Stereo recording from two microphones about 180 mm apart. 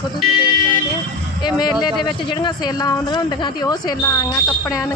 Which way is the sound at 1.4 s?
25° left (ahead or behind).